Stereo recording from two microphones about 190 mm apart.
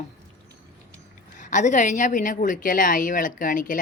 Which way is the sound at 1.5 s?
40° left (ahead or behind).